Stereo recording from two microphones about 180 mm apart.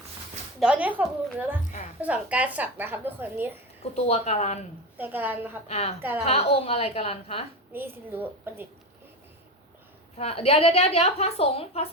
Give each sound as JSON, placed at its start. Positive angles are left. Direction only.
{"t": 0.6, "sound": "a woman's voice", "side_deg": -5}
{"t": 3.9, "sound": "a woman's voice", "side_deg": 35}
{"t": 4.9, "sound": "a woman's voice", "side_deg": -10}
{"t": 5.6, "sound": "a woman's voice", "side_deg": 35}
{"t": 6.0, "sound": "a woman's voice", "side_deg": -10}
{"t": 6.2, "sound": "a woman's voice", "side_deg": 35}
{"t": 7.7, "sound": "a woman's voice", "side_deg": -10}
{"t": 10.2, "sound": "a woman's voice", "side_deg": 35}